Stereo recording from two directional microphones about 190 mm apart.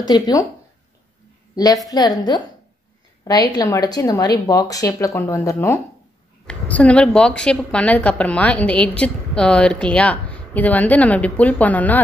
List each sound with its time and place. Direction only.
0.0 s a woman's voice: 20° left (ahead or behind)
1.5 s a woman's voice: 20° left (ahead or behind)